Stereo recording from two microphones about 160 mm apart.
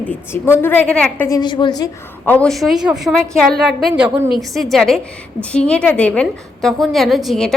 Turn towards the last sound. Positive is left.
turn(degrees=0)  # may be behind; listen again after turning